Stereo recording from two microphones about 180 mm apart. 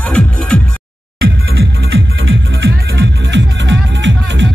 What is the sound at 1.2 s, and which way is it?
Music, 65° right (ahead or behind).